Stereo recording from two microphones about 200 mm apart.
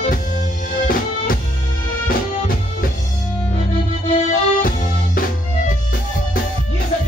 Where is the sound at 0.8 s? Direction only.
45° left (ahead or behind).